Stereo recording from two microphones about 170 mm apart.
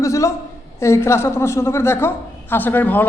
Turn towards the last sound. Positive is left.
turn(degrees=10)  # may be behind; listen again after turning